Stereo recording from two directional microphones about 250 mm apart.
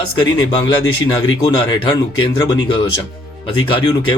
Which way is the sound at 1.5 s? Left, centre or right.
Centre.